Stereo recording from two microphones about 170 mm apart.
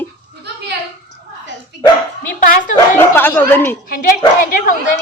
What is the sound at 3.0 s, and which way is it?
Speech, 10° left (ahead or behind).